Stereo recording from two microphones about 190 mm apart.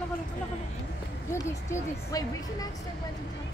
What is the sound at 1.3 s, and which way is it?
Speech, 15° left (ahead or behind).